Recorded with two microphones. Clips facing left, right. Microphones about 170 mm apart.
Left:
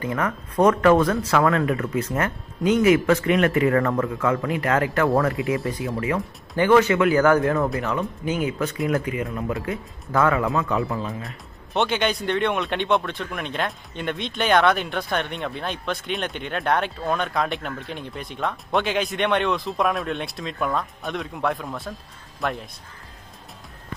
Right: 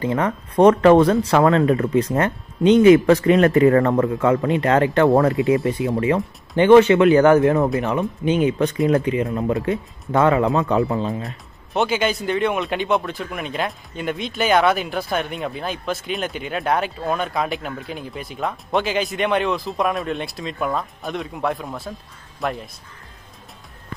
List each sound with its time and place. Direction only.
0.0 s speech: 30° right (ahead or behind)
11.2 s speech: centre (ahead or behind)